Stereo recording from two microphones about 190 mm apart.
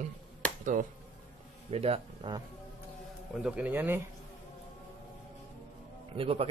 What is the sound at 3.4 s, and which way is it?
Speech, 10° right (ahead or behind).